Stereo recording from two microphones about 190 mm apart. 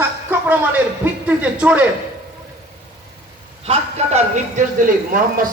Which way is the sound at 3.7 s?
35° right (ahead or behind).